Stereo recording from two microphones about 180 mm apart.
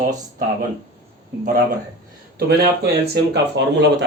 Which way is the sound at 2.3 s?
60° right (ahead or behind).